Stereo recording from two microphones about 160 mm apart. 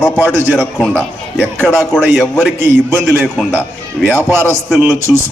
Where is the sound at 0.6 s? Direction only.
5° left (ahead or behind).